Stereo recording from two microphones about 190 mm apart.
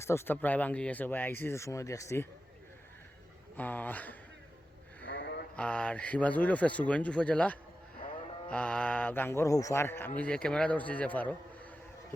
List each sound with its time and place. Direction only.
0.0 s speech: 15° left (ahead or behind)
3.5 s speech: 10° left (ahead or behind)
5.2 s mantra: 60° left (ahead or behind)
5.5 s speech: 5° left (ahead or behind)